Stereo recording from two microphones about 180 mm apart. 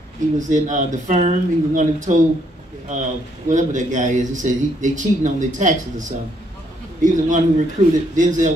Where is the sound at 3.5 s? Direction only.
45° right (ahead or behind).